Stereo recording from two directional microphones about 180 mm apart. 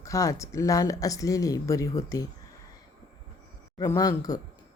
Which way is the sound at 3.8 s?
20° left (ahead or behind).